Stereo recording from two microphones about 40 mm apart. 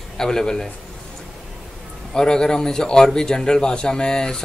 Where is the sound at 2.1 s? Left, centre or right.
Centre.